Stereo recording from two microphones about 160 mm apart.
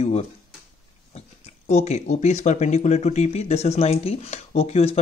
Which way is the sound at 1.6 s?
45° left (ahead or behind).